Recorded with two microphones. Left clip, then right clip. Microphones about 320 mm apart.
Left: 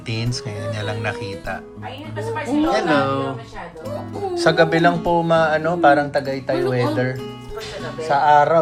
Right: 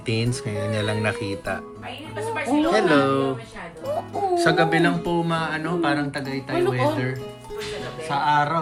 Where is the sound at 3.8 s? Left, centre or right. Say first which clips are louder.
Right 3 dB; centre.